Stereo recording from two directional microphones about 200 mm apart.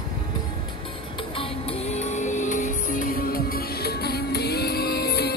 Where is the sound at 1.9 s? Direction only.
35° left (ahead or behind).